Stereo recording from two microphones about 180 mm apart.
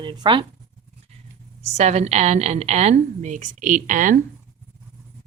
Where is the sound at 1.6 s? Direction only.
40° right (ahead or behind).